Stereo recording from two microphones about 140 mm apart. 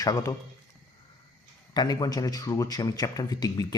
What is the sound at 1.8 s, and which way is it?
Speech, 30° left (ahead or behind).